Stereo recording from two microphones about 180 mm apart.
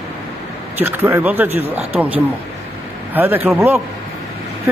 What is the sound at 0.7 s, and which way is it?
Speech, 10° right (ahead or behind).